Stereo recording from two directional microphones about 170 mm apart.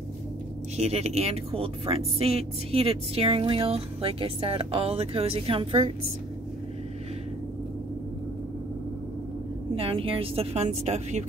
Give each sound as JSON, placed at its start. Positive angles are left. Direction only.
{"t": 0.7, "sound": "speech", "side_deg": -40}
{"t": 9.8, "sound": "speech", "side_deg": -30}